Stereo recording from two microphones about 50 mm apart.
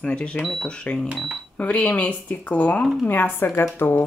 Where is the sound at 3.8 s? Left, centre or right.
Left.